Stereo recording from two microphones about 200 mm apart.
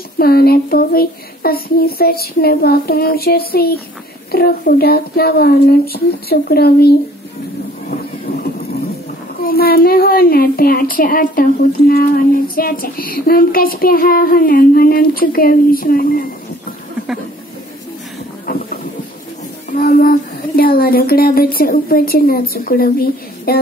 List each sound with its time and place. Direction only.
0.2 s child singing: 50° left (ahead or behind)
9.4 s child singing: 50° left (ahead or behind)
18.5 s a sound: 45° left (ahead or behind)
19.8 s speech: 45° left (ahead or behind)